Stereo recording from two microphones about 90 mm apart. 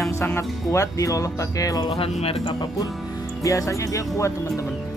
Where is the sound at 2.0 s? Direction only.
90° left.